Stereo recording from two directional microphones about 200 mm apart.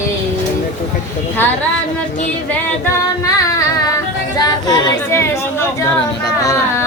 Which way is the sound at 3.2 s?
15° left (ahead or behind).